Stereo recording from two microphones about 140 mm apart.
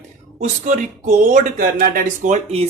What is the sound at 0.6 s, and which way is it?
Speech, 65° right (ahead or behind).